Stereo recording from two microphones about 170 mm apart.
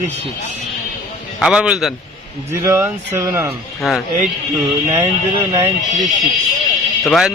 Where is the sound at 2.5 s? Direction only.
15° right (ahead or behind).